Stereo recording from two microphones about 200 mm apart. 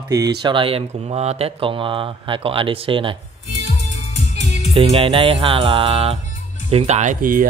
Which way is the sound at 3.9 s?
35° left (ahead or behind).